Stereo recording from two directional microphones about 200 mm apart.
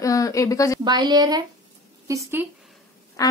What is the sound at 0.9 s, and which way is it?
A woman's voice, 20° right (ahead or behind).